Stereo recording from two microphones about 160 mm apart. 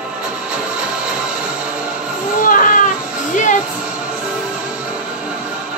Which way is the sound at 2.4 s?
55° left (ahead or behind).